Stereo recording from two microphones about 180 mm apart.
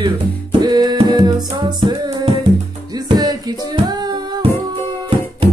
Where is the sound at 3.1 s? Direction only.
25° right (ahead or behind).